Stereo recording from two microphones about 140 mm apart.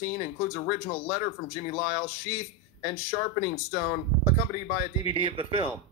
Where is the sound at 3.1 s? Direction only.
90° left.